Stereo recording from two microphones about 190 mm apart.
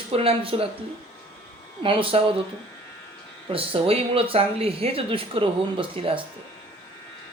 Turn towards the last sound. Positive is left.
turn(degrees=-30)  # may be behind; listen again after turning